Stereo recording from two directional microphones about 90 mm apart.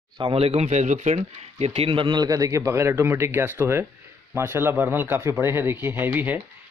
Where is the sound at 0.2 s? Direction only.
90° right.